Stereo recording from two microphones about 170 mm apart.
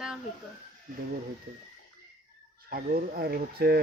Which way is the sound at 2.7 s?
60° right (ahead or behind).